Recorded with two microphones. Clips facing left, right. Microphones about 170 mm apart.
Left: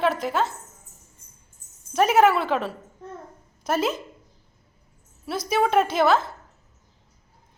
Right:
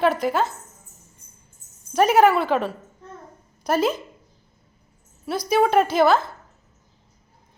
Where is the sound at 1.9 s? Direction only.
Centre (ahead or behind).